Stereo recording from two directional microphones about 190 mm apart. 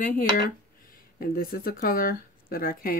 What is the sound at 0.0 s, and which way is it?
Speech, 45° left (ahead or behind).